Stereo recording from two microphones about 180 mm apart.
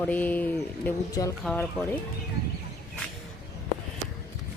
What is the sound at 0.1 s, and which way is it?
Speech, 10° left (ahead or behind).